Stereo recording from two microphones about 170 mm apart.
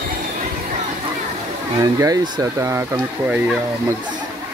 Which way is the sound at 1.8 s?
20° right (ahead or behind).